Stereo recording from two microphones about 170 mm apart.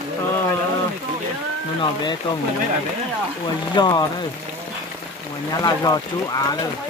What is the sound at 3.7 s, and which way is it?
Speech, 25° left (ahead or behind).